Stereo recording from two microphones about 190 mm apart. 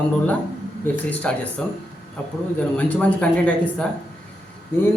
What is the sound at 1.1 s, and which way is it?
Speech, 5° left (ahead or behind).